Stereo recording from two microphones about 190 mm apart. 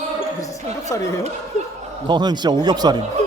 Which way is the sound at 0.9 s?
15° left (ahead or behind).